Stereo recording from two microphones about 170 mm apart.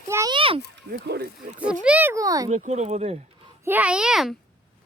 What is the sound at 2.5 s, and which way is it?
Speech, 45° right (ahead or behind).